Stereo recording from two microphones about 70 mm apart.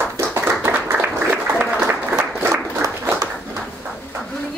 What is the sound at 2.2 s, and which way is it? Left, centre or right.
Applause, right.